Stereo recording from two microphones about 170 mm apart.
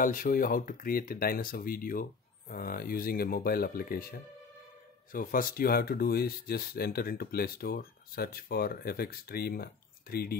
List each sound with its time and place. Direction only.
0.0 s speech: 55° left (ahead or behind)